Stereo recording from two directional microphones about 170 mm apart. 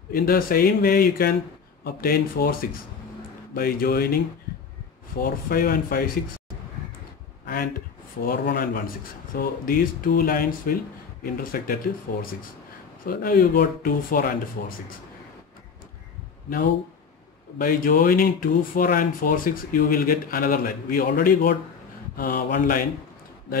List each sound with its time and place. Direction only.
0.1 s speech: 60° left (ahead or behind)
5.2 s speech: 60° left (ahead or behind)
7.4 s speech: 60° left (ahead or behind)
17.6 s speech: 55° left (ahead or behind)